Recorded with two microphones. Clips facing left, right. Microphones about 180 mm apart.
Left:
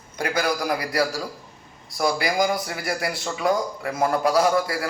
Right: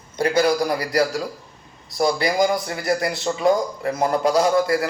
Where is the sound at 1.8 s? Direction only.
25° right (ahead or behind).